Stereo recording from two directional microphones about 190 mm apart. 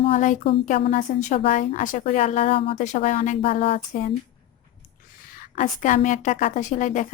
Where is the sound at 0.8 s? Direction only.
40° left (ahead or behind).